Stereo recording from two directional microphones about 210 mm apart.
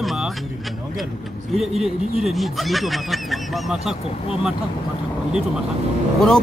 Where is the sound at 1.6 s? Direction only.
Centre (ahead or behind).